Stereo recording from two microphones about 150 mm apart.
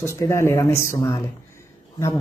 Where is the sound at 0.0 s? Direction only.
20° left (ahead or behind).